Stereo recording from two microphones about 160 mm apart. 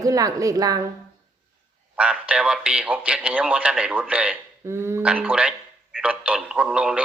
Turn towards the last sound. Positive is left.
turn(degrees=-5)  # may be behind; listen again after turning